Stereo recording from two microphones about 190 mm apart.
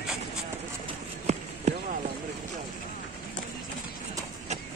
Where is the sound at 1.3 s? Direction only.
35° right (ahead or behind).